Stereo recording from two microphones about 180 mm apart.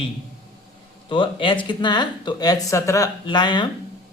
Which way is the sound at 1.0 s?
30° left (ahead or behind).